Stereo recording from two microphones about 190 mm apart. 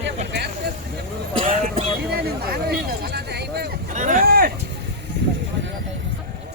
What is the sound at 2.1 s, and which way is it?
Speech, 55° right (ahead or behind).